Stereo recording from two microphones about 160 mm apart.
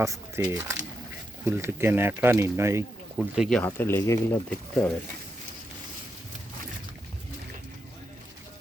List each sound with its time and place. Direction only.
0.0 s speech: 20° right (ahead or behind)
3.2 s speech: centre (ahead or behind)
3.7 s speech: 15° left (ahead or behind)
4.4 s speech: 5° left (ahead or behind)